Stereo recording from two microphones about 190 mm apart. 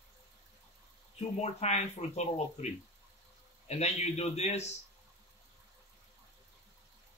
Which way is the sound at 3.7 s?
35° left (ahead or behind).